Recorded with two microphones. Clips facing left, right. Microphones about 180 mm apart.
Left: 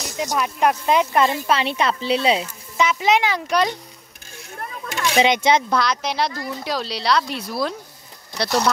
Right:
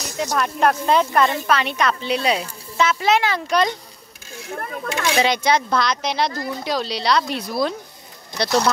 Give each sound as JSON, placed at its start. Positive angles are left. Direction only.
{"t": 0.3, "sound": "speech", "side_deg": 10}
{"t": 2.8, "sound": "a child's voice", "side_deg": 15}
{"t": 4.6, "sound": "speech", "side_deg": -50}
{"t": 5.2, "sound": "speech", "side_deg": 20}
{"t": 5.8, "sound": "a child's voice", "side_deg": 5}